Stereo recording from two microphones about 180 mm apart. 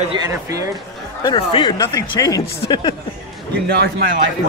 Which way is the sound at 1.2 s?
25° left (ahead or behind).